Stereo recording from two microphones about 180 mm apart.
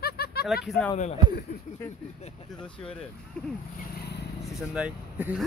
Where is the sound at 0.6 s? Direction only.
5° left (ahead or behind).